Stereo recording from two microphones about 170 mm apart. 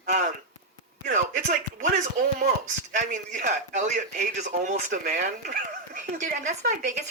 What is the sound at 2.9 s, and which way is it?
Speech, 45° right (ahead or behind).